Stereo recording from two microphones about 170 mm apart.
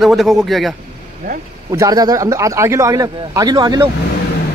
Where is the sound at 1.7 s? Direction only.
20° right (ahead or behind).